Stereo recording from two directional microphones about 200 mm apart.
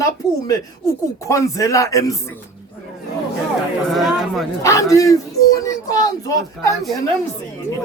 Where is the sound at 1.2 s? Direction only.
15° left (ahead or behind).